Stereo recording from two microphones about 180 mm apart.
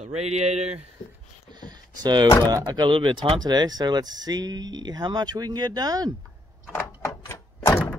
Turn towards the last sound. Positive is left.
turn(degrees=15)  # may be behind; listen again after turning